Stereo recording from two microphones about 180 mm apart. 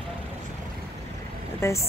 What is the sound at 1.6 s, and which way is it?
Speech, 15° left (ahead or behind).